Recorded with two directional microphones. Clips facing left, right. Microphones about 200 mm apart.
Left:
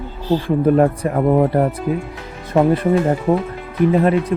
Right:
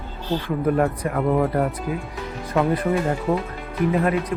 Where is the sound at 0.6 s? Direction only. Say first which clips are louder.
Left 5 dB; 30° left (ahead or behind).